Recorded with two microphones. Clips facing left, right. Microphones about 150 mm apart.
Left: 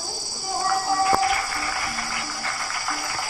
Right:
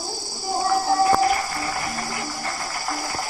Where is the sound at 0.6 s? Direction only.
25° right (ahead or behind).